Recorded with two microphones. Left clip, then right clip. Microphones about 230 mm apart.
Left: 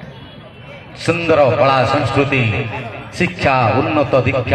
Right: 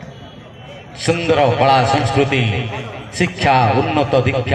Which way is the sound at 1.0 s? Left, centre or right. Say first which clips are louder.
Left 2 dB; right.